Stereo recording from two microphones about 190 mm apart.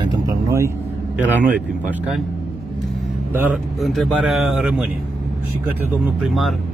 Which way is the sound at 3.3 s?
10° right (ahead or behind).